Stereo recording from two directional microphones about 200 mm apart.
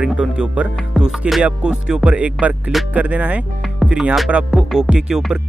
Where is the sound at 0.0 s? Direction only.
5° right (ahead or behind).